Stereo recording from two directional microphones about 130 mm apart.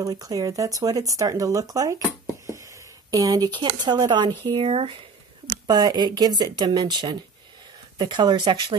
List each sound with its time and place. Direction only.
0.0 s speech: 30° right (ahead or behind)
3.1 s speech: 30° right (ahead or behind)